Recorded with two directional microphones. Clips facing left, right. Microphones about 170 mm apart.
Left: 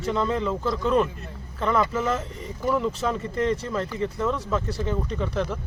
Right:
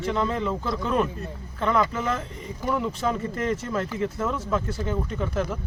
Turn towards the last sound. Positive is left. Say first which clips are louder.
# even
turn(degrees=-5)  # may be behind; listen again after turning